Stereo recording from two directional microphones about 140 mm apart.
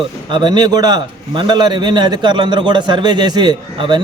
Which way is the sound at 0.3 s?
30° right (ahead or behind).